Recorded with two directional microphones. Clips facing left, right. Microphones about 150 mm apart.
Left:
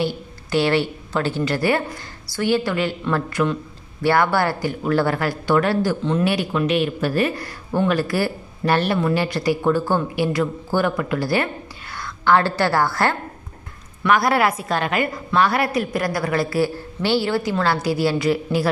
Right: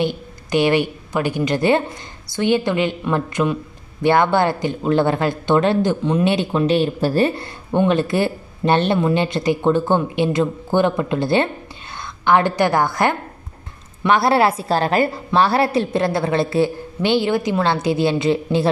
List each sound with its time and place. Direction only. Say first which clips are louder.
0.0 s a woman's voice: right 2 dB; 20° right (ahead or behind)